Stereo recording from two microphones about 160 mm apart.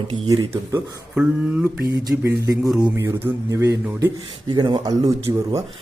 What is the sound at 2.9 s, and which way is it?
Speech, 20° right (ahead or behind).